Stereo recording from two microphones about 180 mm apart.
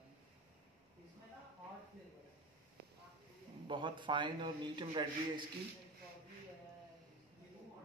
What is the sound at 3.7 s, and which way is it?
A man's voice, 25° right (ahead or behind).